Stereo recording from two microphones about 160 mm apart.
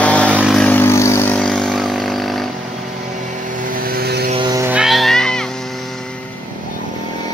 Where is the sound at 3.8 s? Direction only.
75° right (ahead or behind).